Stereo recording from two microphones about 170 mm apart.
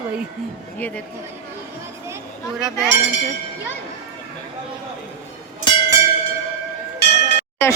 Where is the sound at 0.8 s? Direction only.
10° left (ahead or behind).